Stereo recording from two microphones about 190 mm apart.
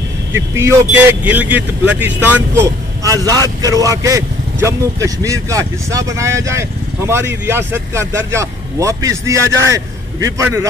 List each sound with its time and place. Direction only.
0.3 s speech: 15° right (ahead or behind)